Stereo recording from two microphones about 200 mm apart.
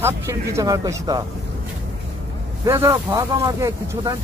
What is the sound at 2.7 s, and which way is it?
Speech, 15° right (ahead or behind).